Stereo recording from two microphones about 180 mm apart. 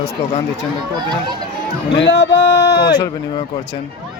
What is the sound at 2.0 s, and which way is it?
Speech, 75° left (ahead or behind).